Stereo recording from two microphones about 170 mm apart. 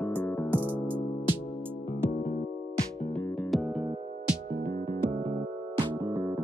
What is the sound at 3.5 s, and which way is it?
Music, centre (ahead or behind).